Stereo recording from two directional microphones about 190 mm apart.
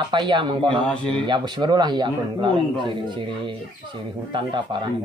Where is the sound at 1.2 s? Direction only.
25° right (ahead or behind).